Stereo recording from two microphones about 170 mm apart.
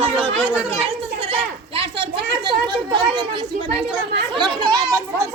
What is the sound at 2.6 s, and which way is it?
Speech, 25° right (ahead or behind).